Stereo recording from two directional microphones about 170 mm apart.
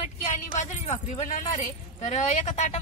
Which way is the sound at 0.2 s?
45° left (ahead or behind).